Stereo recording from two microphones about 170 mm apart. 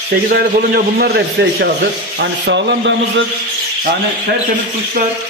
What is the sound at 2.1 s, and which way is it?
A man's voice, 90° right.